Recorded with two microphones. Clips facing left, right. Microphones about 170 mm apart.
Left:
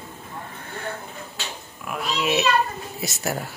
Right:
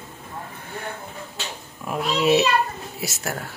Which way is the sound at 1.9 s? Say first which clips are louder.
Right 5 dB; 35° right (ahead or behind).